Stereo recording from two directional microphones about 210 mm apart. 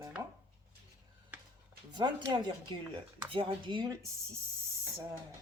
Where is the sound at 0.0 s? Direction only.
15° right (ahead or behind).